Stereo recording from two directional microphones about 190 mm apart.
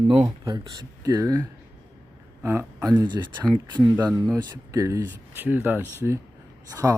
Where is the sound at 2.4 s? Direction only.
10° right (ahead or behind).